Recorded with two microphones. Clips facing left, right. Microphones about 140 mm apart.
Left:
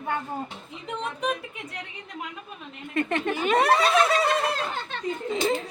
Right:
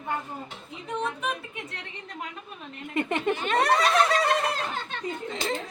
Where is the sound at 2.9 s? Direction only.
20° right (ahead or behind).